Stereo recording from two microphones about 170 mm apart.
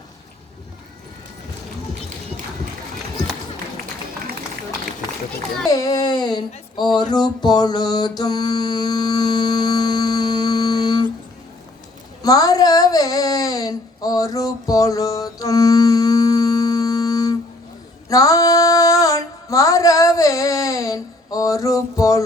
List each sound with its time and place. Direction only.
5.7 s a sound: 20° left (ahead or behind)
12.2 s speech: 20° left (ahead or behind)
18.1 s music: 20° left (ahead or behind)